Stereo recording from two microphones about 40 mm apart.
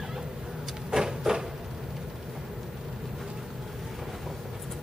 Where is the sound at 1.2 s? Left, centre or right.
Centre.